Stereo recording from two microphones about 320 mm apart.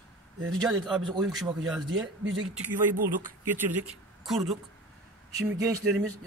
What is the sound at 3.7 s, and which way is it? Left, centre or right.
A woman's voice, centre.